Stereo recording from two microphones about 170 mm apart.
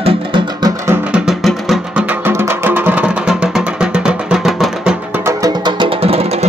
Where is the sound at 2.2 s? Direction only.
15° right (ahead or behind).